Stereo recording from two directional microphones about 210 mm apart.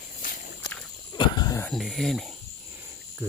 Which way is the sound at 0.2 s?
40° left (ahead or behind).